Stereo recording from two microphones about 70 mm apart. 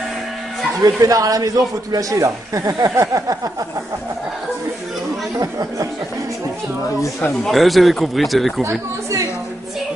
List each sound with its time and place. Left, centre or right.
0.8 s a man's voice: right
5.4 s a man's voice: right
7.0 s speech: left
7.4 s speech: centre
8.6 s speech: right